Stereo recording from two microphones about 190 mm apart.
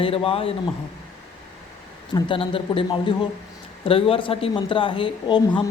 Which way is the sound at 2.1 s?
30° left (ahead or behind).